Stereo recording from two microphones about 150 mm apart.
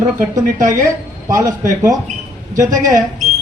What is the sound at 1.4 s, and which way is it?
Speech, 20° right (ahead or behind).